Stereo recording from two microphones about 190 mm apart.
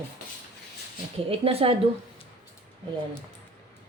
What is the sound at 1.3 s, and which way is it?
Speech, 30° right (ahead or behind).